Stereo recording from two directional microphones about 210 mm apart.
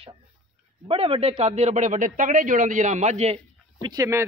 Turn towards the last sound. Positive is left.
turn(degrees=-15)  # may be behind; listen again after turning